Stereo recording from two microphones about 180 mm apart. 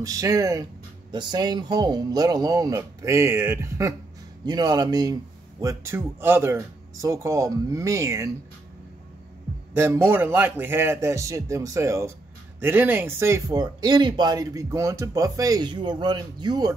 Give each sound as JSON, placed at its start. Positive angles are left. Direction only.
{"t": 0.0, "sound": "speech", "side_deg": -20}
{"t": 9.8, "sound": "speech", "side_deg": -10}